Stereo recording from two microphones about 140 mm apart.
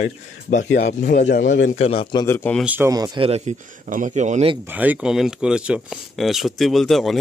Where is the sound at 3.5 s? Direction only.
55° right (ahead or behind).